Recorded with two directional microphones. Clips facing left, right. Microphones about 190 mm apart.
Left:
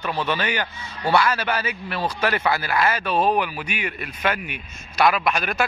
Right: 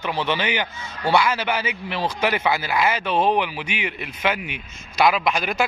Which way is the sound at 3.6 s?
90° right.